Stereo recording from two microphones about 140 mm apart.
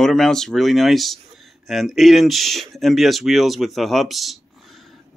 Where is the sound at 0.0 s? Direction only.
5° left (ahead or behind).